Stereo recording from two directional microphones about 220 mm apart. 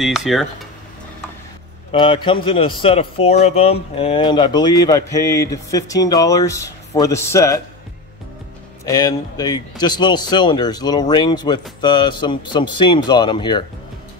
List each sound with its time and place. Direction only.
0.0 s stir: centre (ahead or behind)
1.9 s speech: 25° left (ahead or behind)
8.8 s speech: 15° left (ahead or behind)